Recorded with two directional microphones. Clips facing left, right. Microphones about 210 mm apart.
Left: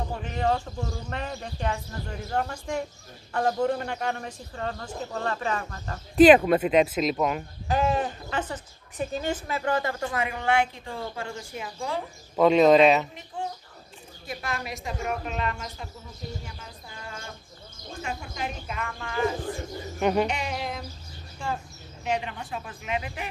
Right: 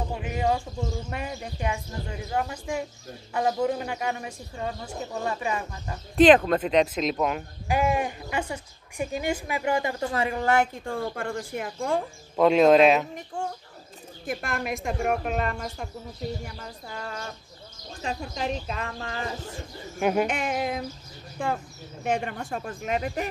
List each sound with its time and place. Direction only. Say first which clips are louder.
0.1 s speech: even; 10° right (ahead or behind)
6.1 s speech: left 2 dB; 5° left (ahead or behind)
7.6 s speech: even; 10° right (ahead or behind)
10.1 s speech: right 2 dB; 35° right (ahead or behind); by 12.0 s 55° right (ahead or behind)
12.4 s speech: even; centre (ahead or behind)
13.1 s speech: right 2 dB; 45° right (ahead or behind)
18.0 s speech: right 4 dB; 30° right (ahead or behind)
20.0 s speech: even; 5° right (ahead or behind)
20.2 s speech: right 3 dB; 50° right (ahead or behind)